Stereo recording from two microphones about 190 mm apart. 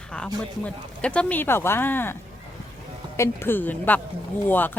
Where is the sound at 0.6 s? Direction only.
5° left (ahead or behind).